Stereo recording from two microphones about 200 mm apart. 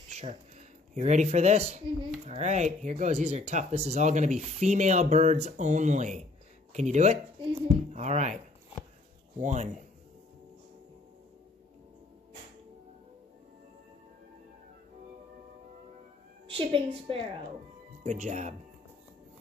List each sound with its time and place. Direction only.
0.1 s speech: 35° right (ahead or behind)
9.4 s speech: 35° right (ahead or behind)
16.4 s a woman's voice: 25° right (ahead or behind)